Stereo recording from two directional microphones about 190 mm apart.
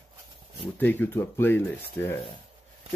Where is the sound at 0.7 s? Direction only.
10° left (ahead or behind).